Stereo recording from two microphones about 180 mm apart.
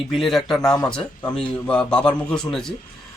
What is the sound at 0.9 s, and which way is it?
Speech, 5° left (ahead or behind).